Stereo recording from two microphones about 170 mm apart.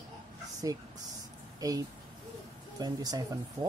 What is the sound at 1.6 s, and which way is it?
Speech, 20° right (ahead or behind).